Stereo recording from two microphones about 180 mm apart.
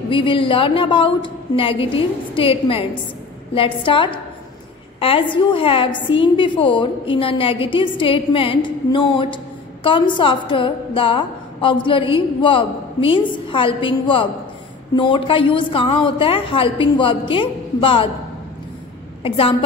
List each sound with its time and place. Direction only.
0.1 s a woman's voice: 25° left (ahead or behind)
19.2 s a woman's voice: 30° left (ahead or behind)